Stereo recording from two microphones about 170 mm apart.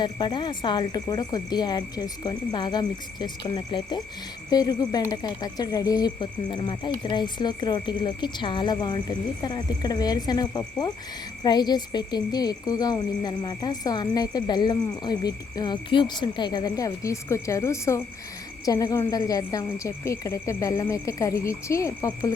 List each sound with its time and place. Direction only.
0.0 s speech: 25° left (ahead or behind)